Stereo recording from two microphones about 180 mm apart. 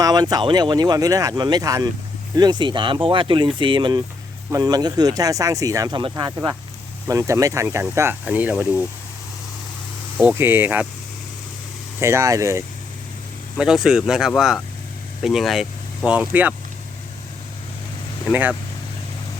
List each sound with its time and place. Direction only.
0.0 s speech: 20° right (ahead or behind)
10.2 s speech: 10° right (ahead or behind)
11.9 s speech: 15° right (ahead or behind)
13.6 s speech: 5° right (ahead or behind)
18.3 s speech: 10° right (ahead or behind)